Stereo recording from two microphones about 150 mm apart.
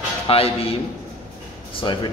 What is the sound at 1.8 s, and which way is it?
Speech, 35° left (ahead or behind).